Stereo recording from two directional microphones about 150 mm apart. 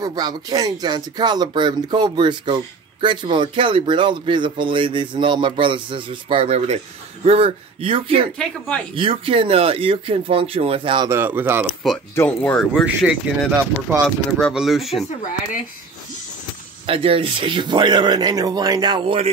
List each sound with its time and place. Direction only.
0.0 s speech: 25° right (ahead or behind)
8.4 s speech: 5° left (ahead or behind)
8.9 s speech: 35° right (ahead or behind)
11.1 s speech: 15° right (ahead or behind)
11.8 s speech: centre (ahead or behind)
12.8 s speech: 10° right (ahead or behind)
14.0 s speech: centre (ahead or behind)
16.8 s speech: 40° right (ahead or behind)